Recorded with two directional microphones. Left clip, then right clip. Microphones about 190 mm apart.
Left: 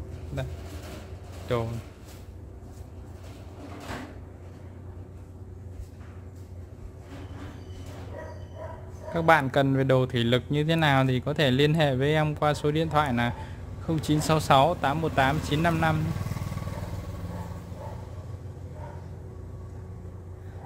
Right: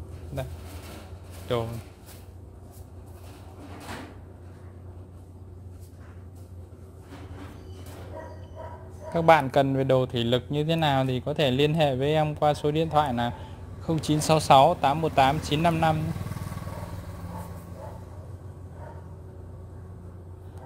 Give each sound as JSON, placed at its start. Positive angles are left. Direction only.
{"t": 1.5, "sound": "speech", "side_deg": -5}
{"t": 9.1, "sound": "speech", "side_deg": -5}